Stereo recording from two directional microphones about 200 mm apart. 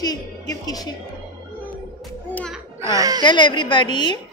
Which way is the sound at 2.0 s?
Centre (ahead or behind).